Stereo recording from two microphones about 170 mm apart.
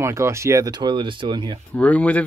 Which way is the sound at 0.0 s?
15° right (ahead or behind).